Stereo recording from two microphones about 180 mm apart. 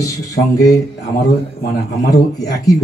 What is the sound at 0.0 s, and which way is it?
Speech, 20° left (ahead or behind).